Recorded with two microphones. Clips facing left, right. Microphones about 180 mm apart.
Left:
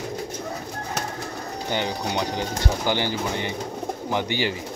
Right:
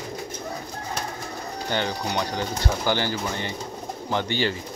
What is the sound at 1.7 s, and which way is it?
Speech, 15° left (ahead or behind).